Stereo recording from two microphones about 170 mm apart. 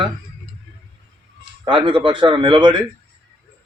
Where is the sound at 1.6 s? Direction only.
30° right (ahead or behind).